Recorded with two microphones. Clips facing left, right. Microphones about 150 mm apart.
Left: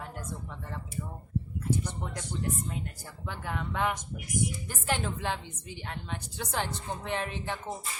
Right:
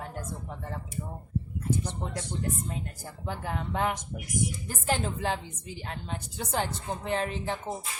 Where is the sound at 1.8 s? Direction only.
30° right (ahead or behind).